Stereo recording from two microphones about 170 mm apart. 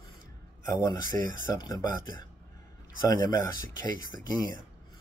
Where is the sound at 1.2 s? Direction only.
15° left (ahead or behind).